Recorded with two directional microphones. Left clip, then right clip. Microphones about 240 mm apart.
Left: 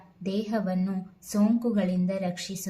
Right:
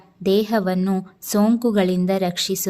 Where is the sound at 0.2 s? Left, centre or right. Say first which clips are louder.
Right 12 dB; right.